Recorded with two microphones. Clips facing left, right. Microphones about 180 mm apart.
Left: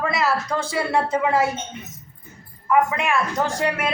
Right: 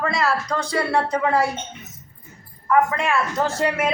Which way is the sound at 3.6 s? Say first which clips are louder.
Right 2 dB; 10° right (ahead or behind).